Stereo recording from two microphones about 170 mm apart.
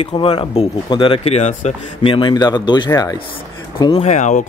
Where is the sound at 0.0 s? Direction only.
30° left (ahead or behind).